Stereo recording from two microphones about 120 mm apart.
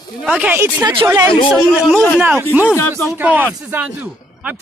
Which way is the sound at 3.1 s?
15° right (ahead or behind).